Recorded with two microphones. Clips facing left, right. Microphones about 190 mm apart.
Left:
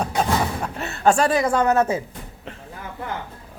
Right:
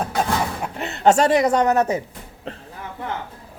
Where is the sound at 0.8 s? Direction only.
20° right (ahead or behind).